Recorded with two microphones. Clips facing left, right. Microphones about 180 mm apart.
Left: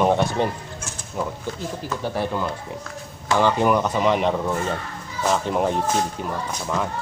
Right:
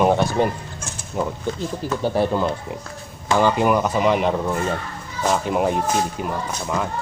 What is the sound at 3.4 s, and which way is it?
Speech, 10° right (ahead or behind).